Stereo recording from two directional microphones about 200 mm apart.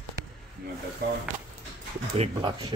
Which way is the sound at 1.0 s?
50° right (ahead or behind).